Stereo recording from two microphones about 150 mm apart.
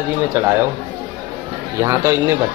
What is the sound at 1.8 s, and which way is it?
Speech, 20° right (ahead or behind).